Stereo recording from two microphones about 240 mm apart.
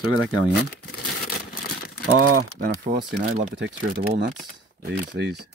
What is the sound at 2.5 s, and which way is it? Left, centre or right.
Speech, right.